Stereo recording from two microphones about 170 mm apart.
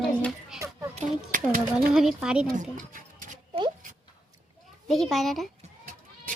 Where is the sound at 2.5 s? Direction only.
50° right (ahead or behind).